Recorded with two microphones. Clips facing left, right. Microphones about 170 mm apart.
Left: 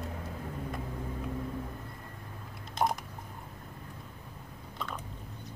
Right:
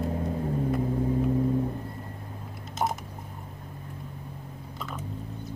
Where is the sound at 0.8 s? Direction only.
35° right (ahead or behind).